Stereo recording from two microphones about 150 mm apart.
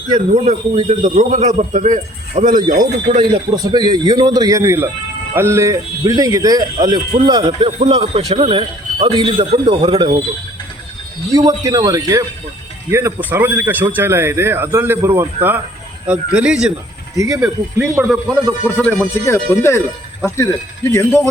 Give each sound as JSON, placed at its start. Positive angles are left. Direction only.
{"t": 0.9, "sound": "a man's voice", "side_deg": -50}
{"t": 3.2, "sound": "a man's voice", "side_deg": -30}
{"t": 11.3, "sound": "a man's voice", "side_deg": -25}
{"t": 17.2, "sound": "a man's voice", "side_deg": -25}
{"t": 17.4, "sound": "speech", "side_deg": -5}
{"t": 18.8, "sound": "speech", "side_deg": 10}